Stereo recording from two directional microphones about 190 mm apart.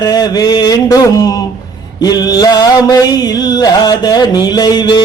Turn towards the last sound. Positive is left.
turn(degrees=20)  # may be behind; listen again after turning